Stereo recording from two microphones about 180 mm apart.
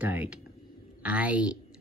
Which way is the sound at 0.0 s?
10° right (ahead or behind).